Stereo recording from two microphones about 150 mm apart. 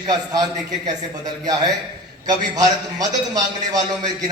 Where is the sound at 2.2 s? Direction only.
25° right (ahead or behind).